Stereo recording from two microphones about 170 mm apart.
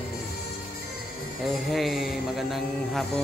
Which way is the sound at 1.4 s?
Centre (ahead or behind).